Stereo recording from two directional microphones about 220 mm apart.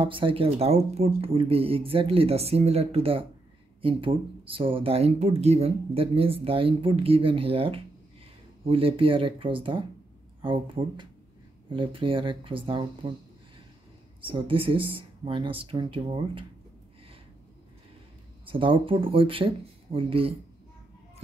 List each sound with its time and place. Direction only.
0.0 s speech: 25° right (ahead or behind)
14.2 s speech: 25° right (ahead or behind)
18.4 s speech: 25° right (ahead or behind)